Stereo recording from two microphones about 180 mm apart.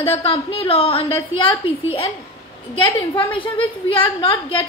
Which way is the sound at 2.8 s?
30° left (ahead or behind).